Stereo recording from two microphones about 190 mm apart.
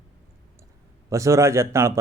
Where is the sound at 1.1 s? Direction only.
15° right (ahead or behind).